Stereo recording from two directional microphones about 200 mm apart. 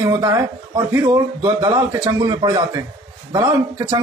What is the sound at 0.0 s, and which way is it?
A man's voice, 15° right (ahead or behind).